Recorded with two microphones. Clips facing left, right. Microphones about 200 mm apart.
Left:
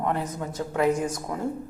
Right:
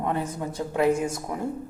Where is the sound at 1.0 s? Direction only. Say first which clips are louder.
Even; 25° right (ahead or behind).